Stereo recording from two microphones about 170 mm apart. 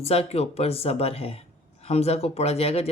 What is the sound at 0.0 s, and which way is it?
Speech, 40° left (ahead or behind).